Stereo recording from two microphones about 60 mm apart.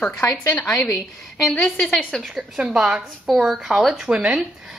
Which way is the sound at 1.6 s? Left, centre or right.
Centre.